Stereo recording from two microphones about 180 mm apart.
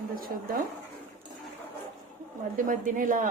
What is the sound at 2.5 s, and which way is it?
Speech, 45° right (ahead or behind).